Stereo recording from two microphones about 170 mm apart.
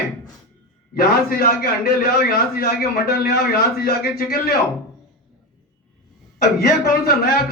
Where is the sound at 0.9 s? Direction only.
60° left (ahead or behind).